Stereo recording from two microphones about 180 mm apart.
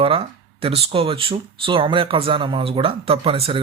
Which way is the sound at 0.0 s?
30° right (ahead or behind).